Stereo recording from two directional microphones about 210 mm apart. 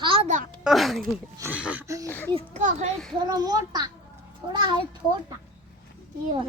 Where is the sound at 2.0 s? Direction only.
10° left (ahead or behind).